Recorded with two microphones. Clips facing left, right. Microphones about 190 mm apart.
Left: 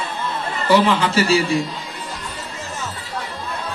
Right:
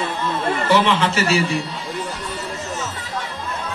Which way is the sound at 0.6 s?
30° left (ahead or behind).